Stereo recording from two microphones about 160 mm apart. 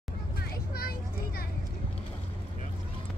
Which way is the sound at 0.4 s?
75° left (ahead or behind).